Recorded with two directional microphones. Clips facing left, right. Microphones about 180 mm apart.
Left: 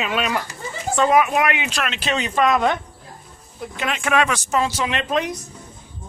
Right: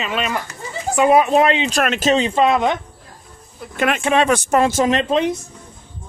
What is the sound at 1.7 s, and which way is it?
Speech, 45° right (ahead or behind).